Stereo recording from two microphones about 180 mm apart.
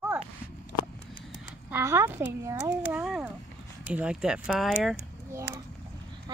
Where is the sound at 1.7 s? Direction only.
15° right (ahead or behind).